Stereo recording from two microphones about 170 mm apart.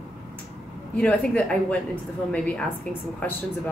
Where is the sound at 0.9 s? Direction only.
5° left (ahead or behind).